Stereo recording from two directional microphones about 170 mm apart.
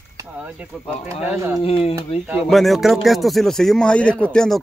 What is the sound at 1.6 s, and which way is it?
Speech, 35° left (ahead or behind).